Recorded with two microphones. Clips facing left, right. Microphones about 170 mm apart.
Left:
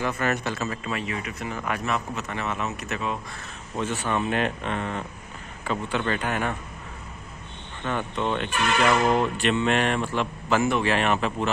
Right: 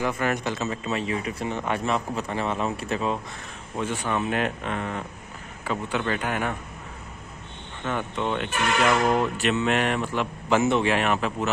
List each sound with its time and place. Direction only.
0.0 s speech: 15° right (ahead or behind); by 3.2 s 30° right (ahead or behind)
3.7 s speech: 10° right (ahead or behind)
7.8 s speech: 5° right (ahead or behind)